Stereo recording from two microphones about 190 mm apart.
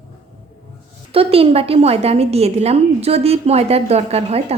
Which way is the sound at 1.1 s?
30° right (ahead or behind).